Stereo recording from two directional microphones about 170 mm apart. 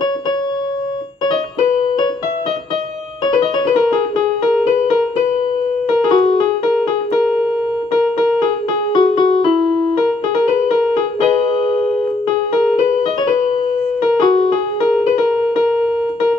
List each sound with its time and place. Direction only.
1.2 s keyboard: 30° left (ahead or behind)
6.0 s music: 25° left (ahead or behind)
8.9 s music: 25° left (ahead or behind)
14.2 s music: 30° left (ahead or behind)